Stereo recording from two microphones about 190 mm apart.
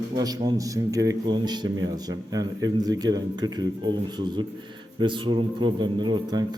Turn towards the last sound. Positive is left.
turn(degrees=-20)  # may be behind; listen again after turning